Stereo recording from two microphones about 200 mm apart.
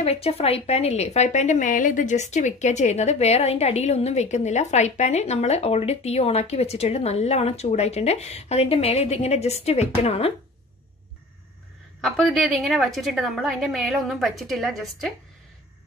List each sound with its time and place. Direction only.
0.0 s a woman's voice: 30° left (ahead or behind)
12.0 s a woman's voice: centre (ahead or behind)